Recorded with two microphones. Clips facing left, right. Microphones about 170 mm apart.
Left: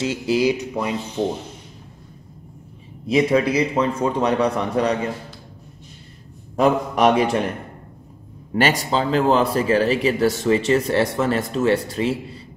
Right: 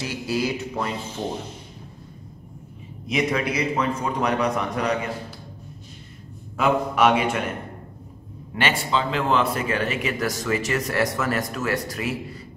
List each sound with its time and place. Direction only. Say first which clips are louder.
0.0 s speech: left 6 dB; 25° left (ahead or behind)
3.1 s a man's voice: left 6 dB; 30° left (ahead or behind)
6.5 s a man's voice: left 4 dB; 40° left (ahead or behind)
8.5 s a man's voice: left 4 dB; 40° left (ahead or behind)